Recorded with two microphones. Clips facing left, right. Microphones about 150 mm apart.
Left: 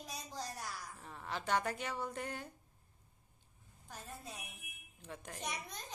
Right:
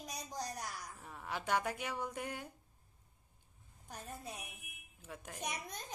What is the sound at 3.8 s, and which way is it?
Speech, 20° right (ahead or behind).